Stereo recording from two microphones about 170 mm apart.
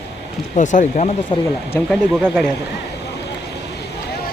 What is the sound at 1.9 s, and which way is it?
Speech, 5° right (ahead or behind).